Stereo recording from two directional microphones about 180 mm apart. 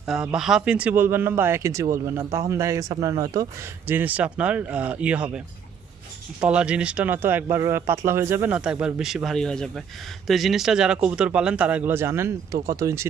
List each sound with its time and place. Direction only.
0.0 s speech: 5° right (ahead or behind)
6.4 s speech: 5° right (ahead or behind)